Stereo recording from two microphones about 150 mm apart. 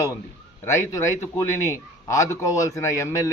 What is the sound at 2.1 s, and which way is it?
Speech, 20° left (ahead or behind).